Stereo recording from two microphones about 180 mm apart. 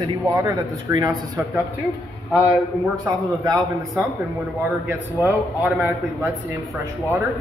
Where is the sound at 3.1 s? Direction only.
20° right (ahead or behind).